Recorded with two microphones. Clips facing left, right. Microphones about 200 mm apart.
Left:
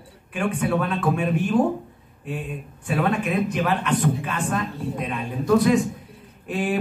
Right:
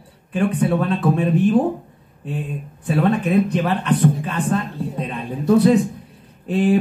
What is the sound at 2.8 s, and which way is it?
A man's voice, 35° right (ahead or behind).